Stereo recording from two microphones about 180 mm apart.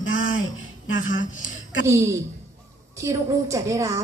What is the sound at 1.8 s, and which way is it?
A woman's voice, 15° right (ahead or behind).